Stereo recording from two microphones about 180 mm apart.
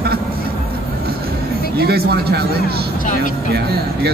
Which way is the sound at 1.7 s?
60° right (ahead or behind).